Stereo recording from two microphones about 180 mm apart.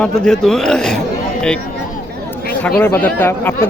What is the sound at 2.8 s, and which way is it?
Speech, 10° left (ahead or behind).